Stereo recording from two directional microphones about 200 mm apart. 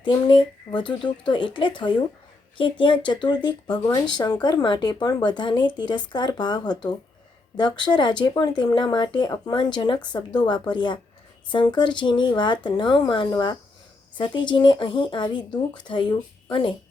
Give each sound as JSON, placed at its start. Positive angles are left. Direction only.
{"t": 0.0, "sound": "speech", "side_deg": 25}